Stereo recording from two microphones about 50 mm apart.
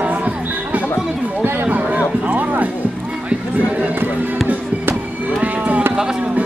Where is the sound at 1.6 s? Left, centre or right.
Right.